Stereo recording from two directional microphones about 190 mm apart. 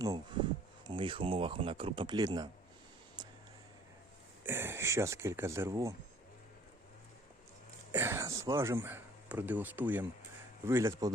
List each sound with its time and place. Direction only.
0.0 s speech: 20° right (ahead or behind)
3.2 s a sound: 25° right (ahead or behind)
4.4 s speech: 10° right (ahead or behind)
7.9 s speech: 15° right (ahead or behind)